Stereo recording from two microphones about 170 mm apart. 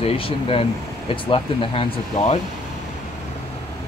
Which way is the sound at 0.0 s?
35° left (ahead or behind).